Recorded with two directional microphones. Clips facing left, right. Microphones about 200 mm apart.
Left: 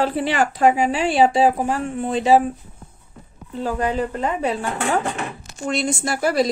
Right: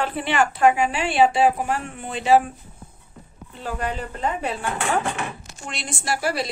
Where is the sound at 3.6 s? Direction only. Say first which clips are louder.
Left 6 dB; 40° left (ahead or behind).